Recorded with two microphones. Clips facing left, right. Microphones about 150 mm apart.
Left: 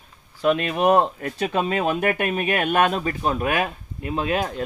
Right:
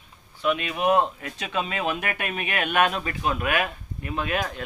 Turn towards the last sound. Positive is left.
turn(degrees=30)  # may be behind; listen again after turning